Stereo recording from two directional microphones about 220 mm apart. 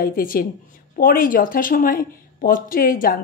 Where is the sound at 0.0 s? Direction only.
40° left (ahead or behind).